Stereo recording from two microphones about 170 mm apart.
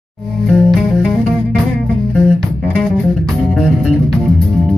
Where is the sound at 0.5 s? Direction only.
Centre (ahead or behind).